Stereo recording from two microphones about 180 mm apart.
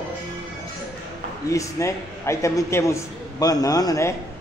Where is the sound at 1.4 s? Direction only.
15° left (ahead or behind).